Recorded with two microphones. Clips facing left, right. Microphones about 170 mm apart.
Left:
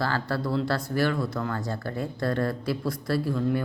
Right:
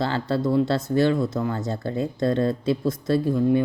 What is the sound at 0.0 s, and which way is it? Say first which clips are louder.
Speech: right 4 dB; 20° right (ahead or behind).